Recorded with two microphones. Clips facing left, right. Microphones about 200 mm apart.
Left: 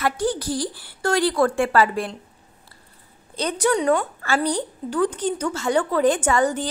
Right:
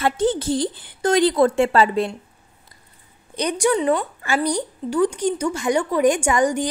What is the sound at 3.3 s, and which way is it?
A woman's voice, 15° right (ahead or behind).